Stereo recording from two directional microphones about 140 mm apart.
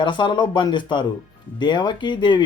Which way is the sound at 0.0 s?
35° left (ahead or behind).